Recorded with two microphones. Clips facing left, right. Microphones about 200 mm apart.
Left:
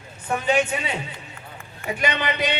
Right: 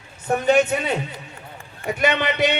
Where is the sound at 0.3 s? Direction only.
40° right (ahead or behind).